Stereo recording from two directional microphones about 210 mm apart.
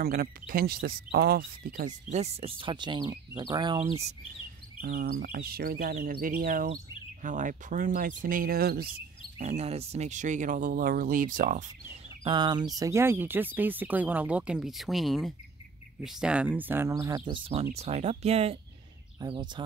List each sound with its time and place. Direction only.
0.0 s speech: 45° right (ahead or behind); by 3.8 s 20° right (ahead or behind)
4.8 s speech: 40° right (ahead or behind)
9.4 s speech: 30° right (ahead or behind)